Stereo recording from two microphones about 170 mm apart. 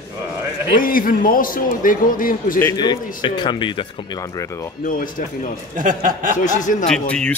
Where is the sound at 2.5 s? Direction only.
20° left (ahead or behind).